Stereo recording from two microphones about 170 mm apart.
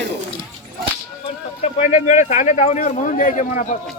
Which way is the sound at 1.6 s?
40° left (ahead or behind).